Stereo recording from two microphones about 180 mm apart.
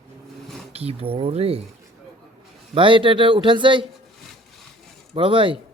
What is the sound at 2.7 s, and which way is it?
A man's voice, 30° right (ahead or behind).